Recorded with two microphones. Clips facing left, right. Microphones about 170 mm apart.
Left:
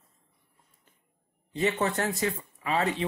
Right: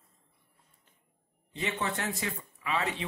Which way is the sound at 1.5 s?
40° left (ahead or behind).